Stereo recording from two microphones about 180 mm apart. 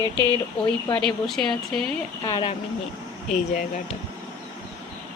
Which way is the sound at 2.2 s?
25° left (ahead or behind).